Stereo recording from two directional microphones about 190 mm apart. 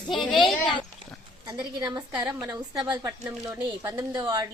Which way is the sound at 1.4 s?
20° right (ahead or behind).